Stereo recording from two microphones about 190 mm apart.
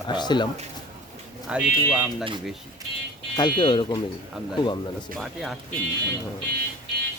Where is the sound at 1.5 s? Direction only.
5° right (ahead or behind).